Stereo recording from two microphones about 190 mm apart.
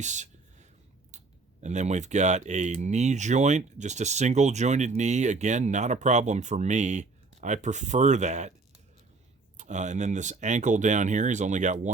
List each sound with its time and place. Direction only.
0.0 s a sound: 40° right (ahead or behind)
1.1 s clicking: 40° right (ahead or behind)
1.6 s speech: 40° right (ahead or behind)
9.6 s speech: 40° right (ahead or behind)